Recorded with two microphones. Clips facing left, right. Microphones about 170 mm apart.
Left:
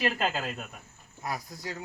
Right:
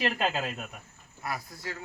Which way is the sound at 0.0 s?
Centre (ahead or behind).